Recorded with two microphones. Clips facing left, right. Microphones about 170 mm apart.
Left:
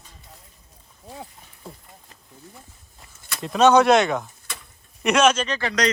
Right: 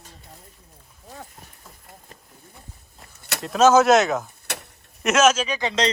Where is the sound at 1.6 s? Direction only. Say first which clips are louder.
Left 9 dB; 30° left (ahead or behind).